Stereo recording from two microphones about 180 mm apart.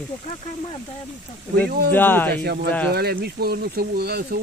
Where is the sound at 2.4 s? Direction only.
65° right (ahead or behind).